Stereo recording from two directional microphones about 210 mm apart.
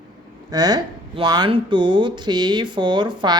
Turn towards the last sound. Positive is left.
turn(degrees=-20)  # may be behind; listen again after turning